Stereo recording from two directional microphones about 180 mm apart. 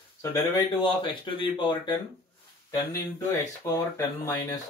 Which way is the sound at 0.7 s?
25° left (ahead or behind).